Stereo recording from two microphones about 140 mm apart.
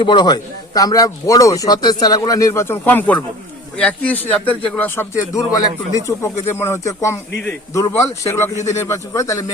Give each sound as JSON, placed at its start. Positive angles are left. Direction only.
{"t": 0.0, "sound": "a man's voice", "side_deg": 35}